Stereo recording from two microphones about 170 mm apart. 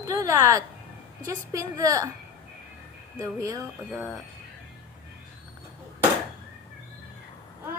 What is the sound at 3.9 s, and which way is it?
Speech, centre (ahead or behind).